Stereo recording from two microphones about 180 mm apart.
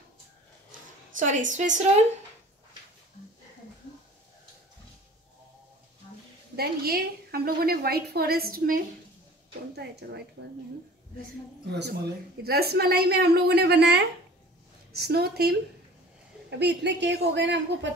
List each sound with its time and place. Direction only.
1.1 s a woman's voice: 45° right (ahead or behind)
6.5 s a woman's voice: 60° right (ahead or behind)
9.8 s a woman's voice: 65° right (ahead or behind)
11.7 s a woman's voice: 70° right (ahead or behind)
16.4 s a woman's voice: 70° right (ahead or behind)